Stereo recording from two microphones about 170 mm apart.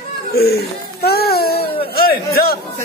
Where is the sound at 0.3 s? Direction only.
65° left (ahead or behind).